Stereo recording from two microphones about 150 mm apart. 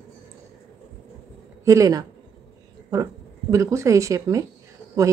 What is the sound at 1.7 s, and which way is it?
Speech, 20° right (ahead or behind).